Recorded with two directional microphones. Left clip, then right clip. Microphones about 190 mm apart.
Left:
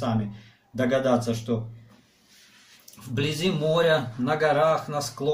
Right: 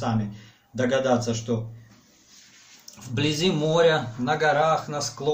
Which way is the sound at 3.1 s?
10° right (ahead or behind).